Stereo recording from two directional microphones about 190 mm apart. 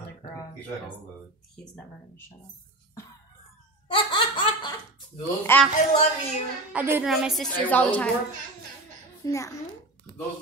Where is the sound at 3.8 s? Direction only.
25° left (ahead or behind).